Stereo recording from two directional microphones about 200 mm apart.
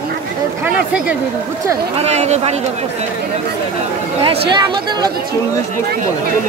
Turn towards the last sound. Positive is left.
turn(degrees=-20)  # may be behind; listen again after turning